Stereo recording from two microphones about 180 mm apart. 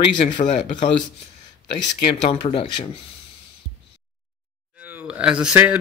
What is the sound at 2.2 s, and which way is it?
Speech, 35° left (ahead or behind).